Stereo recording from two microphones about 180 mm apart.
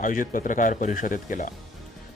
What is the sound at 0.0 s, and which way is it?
Speech, 45° left (ahead or behind).